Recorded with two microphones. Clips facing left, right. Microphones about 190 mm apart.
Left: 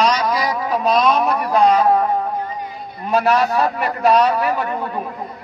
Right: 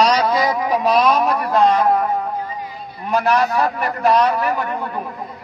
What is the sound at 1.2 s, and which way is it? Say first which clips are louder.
Music: even; 10° left (ahead or behind).